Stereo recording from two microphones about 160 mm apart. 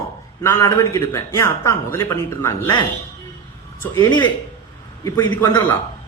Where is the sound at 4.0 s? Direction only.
30° left (ahead or behind).